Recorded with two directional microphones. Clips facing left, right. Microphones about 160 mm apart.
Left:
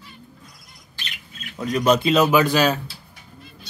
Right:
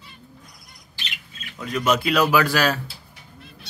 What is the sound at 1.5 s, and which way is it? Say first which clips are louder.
Speech: left 4 dB; 35° left (ahead or behind).